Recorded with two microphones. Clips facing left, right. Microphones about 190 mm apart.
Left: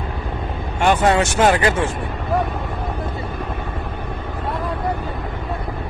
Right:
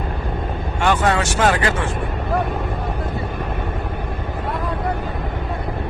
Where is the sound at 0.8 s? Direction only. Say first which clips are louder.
Left 3 dB; 20° left (ahead or behind).